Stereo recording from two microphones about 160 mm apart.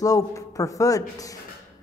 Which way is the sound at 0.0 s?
20° left (ahead or behind).